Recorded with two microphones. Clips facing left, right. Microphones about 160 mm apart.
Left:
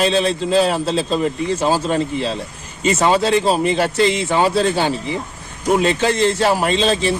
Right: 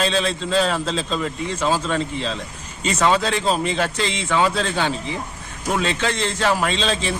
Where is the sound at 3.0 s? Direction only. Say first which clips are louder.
Left 3 dB; 35° left (ahead or behind).